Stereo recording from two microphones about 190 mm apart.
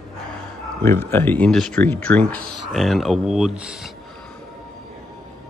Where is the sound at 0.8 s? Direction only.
10° left (ahead or behind).